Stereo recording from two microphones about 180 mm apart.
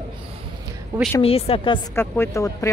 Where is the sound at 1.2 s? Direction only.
30° left (ahead or behind).